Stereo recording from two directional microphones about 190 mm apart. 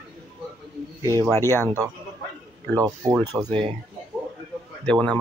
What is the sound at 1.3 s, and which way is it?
Speech, 15° left (ahead or behind).